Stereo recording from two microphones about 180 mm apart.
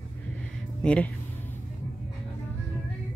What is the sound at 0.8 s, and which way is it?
Speech, 5° left (ahead or behind).